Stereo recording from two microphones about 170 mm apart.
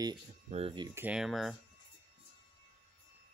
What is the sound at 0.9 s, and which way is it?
Speech, 10° right (ahead or behind).